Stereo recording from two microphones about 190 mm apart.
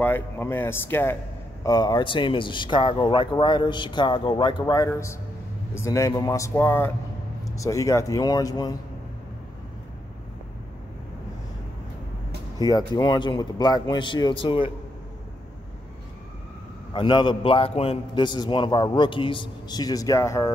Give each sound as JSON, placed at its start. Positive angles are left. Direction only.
{"t": 0.0, "sound": "a man's voice", "side_deg": 10}
{"t": 12.7, "sound": "a man's voice", "side_deg": 25}
{"t": 16.9, "sound": "a man's voice", "side_deg": 25}